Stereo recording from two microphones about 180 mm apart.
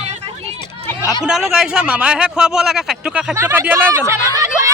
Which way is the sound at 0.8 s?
15° left (ahead or behind).